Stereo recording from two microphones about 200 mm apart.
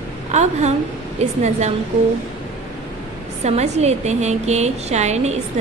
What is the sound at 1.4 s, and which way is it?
Speech, 35° right (ahead or behind).